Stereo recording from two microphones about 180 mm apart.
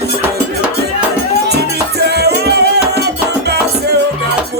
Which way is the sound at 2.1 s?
65° right (ahead or behind).